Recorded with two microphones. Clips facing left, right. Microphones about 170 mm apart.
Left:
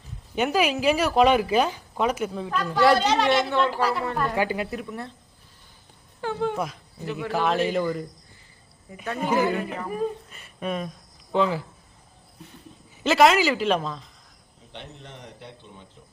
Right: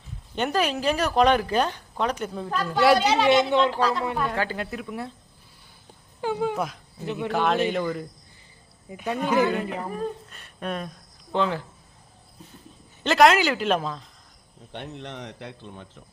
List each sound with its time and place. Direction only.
0.3 s a woman's voice: 5° left (ahead or behind)
3.7 s a woman's voice: 10° left (ahead or behind); by 5.1 s 5° right (ahead or behind)
6.2 s a woman's voice: 10° right (ahead or behind)
8.9 s a woman's voice: 15° right (ahead or behind)
9.2 s a man's voice: 20° left (ahead or behind)
9.5 s a woman's voice: centre (ahead or behind)
13.0 s a woman's voice: centre (ahead or behind)
14.7 s a man's voice: 65° right (ahead or behind); by 15.9 s 90° right